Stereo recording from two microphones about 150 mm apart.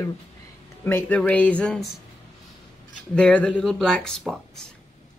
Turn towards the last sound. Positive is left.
turn(degrees=5)  # may be behind; listen again after turning